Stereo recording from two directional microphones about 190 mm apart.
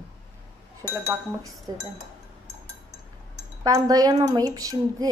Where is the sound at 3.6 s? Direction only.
20° right (ahead or behind).